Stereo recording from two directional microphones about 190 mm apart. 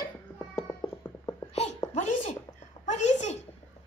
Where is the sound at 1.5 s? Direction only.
35° left (ahead or behind).